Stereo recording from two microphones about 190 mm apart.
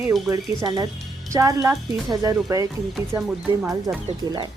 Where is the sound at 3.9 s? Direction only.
20° right (ahead or behind).